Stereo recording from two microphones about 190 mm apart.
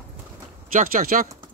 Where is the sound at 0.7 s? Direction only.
45° right (ahead or behind).